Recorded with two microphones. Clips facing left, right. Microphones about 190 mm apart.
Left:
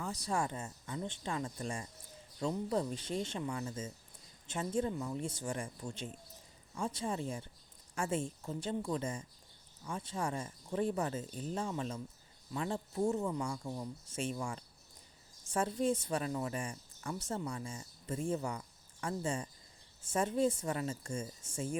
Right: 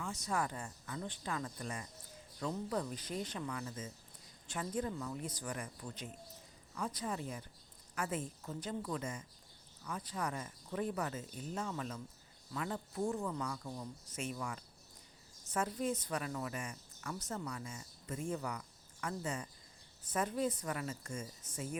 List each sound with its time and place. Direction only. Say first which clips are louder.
0.0 s speech: left 2 dB; 35° left (ahead or behind)